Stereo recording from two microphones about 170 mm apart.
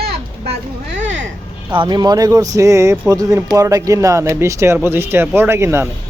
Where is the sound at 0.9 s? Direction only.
90° right.